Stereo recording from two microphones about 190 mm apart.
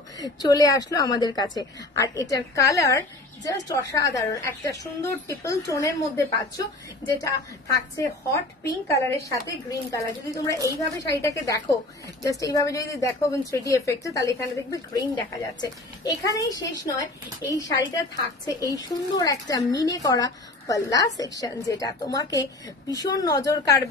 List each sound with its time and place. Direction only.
0.2 s a woman's voice: 20° left (ahead or behind)